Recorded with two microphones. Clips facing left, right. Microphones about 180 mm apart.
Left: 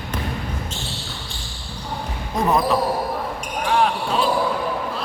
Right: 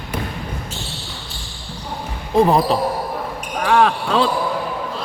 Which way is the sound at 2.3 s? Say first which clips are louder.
Right 5 dB; 30° right (ahead or behind).